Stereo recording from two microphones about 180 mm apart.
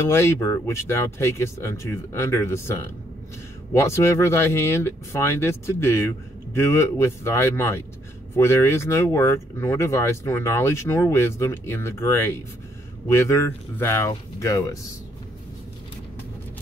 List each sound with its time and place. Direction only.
0.0 s speech: 15° left (ahead or behind)